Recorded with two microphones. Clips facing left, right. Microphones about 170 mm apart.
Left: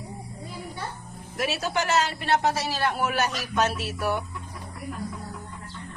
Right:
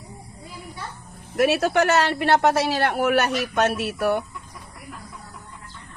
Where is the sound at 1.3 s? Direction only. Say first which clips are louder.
Right 8 dB; 60° right (ahead or behind).